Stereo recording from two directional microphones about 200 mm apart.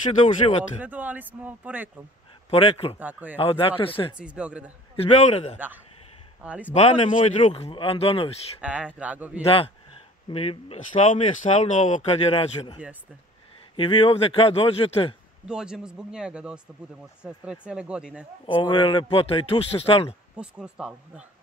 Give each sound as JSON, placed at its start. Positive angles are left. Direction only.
{"t": 0.7, "sound": "speech", "side_deg": -10}
{"t": 2.5, "sound": "a man's voice", "side_deg": 30}
{"t": 3.0, "sound": "speech", "side_deg": -10}
{"t": 3.3, "sound": "a man's voice", "side_deg": 25}
{"t": 4.2, "sound": "speech", "side_deg": -5}
{"t": 5.0, "sound": "speech", "side_deg": 30}
{"t": 6.4, "sound": "speech", "side_deg": -5}
{"t": 6.7, "sound": "a man's voice", "side_deg": 30}
{"t": 8.5, "sound": "speech", "side_deg": -5}
{"t": 9.4, "sound": "a man's voice", "side_deg": 30}
{"t": 13.7, "sound": "a man's voice", "side_deg": 25}
{"t": 15.4, "sound": "speech", "side_deg": -5}
{"t": 18.5, "sound": "a man's voice", "side_deg": 25}
{"t": 20.3, "sound": "speech", "side_deg": -5}